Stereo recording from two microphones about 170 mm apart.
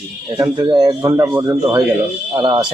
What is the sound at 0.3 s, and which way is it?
Speech, 20° right (ahead or behind).